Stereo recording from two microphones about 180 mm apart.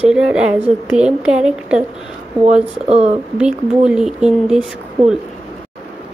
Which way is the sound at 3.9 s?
5° right (ahead or behind).